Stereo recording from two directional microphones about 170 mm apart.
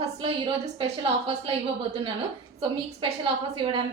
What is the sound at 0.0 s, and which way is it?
A woman's voice, 30° right (ahead or behind).